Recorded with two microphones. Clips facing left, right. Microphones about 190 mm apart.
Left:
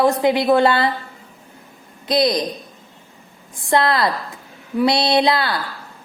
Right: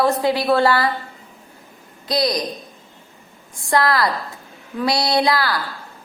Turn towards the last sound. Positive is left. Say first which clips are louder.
# left 2 dB
turn(degrees=25)  # may be behind; listen again after turning